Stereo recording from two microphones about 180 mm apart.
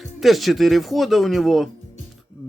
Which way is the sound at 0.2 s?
Centre (ahead or behind).